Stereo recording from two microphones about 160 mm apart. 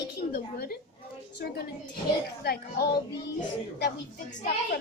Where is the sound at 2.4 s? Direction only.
75° left (ahead or behind).